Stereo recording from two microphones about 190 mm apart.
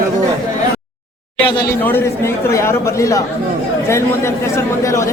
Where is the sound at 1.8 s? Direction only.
10° left (ahead or behind).